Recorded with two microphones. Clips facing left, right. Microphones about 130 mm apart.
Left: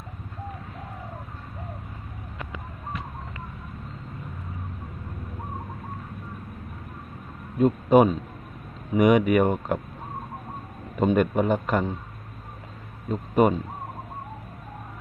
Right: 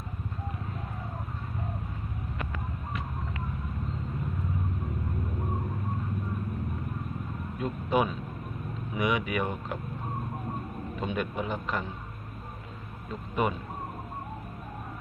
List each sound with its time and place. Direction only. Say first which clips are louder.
7.6 s a man's voice: left 10 dB; 45° left (ahead or behind)
10.9 s a man's voice: left 11 dB; 50° left (ahead or behind)
13.1 s speech: left 9 dB; 45° left (ahead or behind)